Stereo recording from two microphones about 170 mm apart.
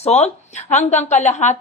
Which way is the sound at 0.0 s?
40° left (ahead or behind).